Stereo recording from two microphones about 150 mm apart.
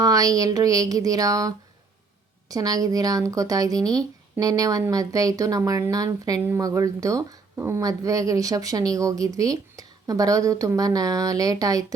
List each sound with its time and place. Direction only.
0.0 s speech: 25° right (ahead or behind)